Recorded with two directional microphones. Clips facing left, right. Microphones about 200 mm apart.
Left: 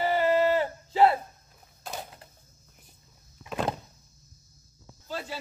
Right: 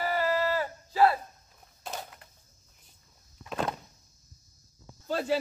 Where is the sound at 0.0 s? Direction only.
25° left (ahead or behind).